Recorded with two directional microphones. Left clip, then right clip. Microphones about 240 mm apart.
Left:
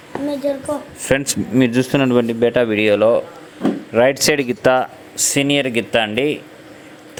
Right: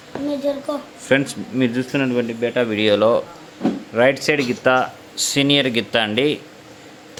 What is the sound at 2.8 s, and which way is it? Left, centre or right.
Speech, centre.